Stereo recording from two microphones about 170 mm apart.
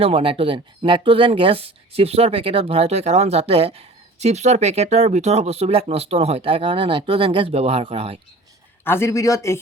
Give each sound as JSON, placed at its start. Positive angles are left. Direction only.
{"t": 0.0, "sound": "speech", "side_deg": -30}
{"t": 8.8, "sound": "speech", "side_deg": 15}